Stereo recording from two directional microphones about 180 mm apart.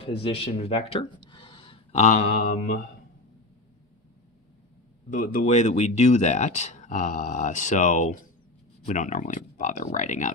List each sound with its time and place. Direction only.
0.0 s speech: 30° left (ahead or behind); by 2.8 s 45° left (ahead or behind)
5.1 s speech: 45° left (ahead or behind)